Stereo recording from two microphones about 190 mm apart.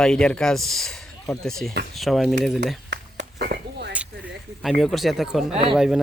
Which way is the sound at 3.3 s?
55° right (ahead or behind).